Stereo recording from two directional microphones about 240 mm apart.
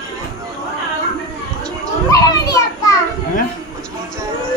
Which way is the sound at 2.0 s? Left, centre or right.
Centre.